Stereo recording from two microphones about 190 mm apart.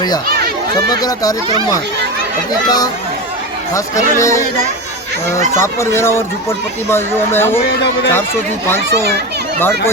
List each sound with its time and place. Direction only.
0.9 s speech: 20° left (ahead or behind)
2.6 s speech: 20° left (ahead or behind)
4.2 s speech: 15° left (ahead or behind)
5.5 s speech: 15° left (ahead or behind)
9.6 s speech: 15° left (ahead or behind)